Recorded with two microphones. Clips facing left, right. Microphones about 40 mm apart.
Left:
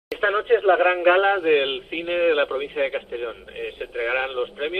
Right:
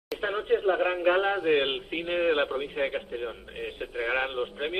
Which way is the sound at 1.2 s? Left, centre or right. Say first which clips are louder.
Left 6 dB; left.